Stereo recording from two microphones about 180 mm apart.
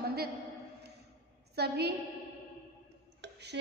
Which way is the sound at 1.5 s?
65° right (ahead or behind).